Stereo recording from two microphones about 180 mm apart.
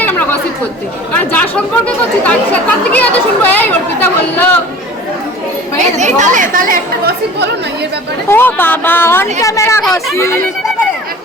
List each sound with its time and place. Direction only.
0.0 s chatter: 10° left (ahead or behind)
1.1 s speech: 10° left (ahead or behind)
6.0 s speech: 40° right (ahead or behind); by 7.4 s 60° right (ahead or behind)
8.3 s speech: 10° left (ahead or behind)